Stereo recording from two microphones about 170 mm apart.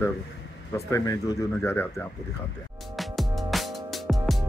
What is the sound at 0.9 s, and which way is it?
Speech, 20° left (ahead or behind).